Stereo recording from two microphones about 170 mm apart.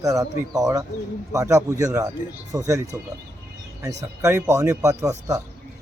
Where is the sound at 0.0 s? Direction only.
20° right (ahead or behind).